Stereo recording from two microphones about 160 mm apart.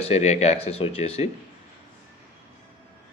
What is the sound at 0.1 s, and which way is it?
A man's voice, 45° left (ahead or behind).